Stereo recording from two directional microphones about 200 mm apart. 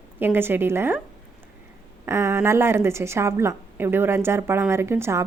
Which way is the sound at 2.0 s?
15° right (ahead or behind).